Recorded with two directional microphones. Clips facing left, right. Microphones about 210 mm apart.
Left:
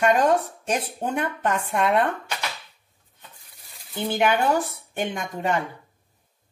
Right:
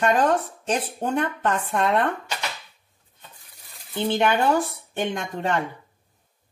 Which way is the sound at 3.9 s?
10° left (ahead or behind).